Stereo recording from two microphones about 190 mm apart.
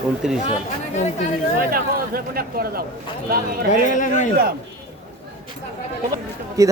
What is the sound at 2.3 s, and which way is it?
Speech, 50° right (ahead or behind).